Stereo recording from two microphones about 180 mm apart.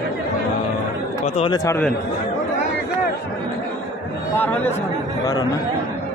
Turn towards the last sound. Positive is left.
turn(degrees=10)  # may be behind; listen again after turning